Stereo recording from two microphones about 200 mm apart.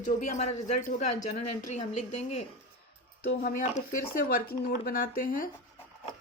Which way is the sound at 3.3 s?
45° left (ahead or behind).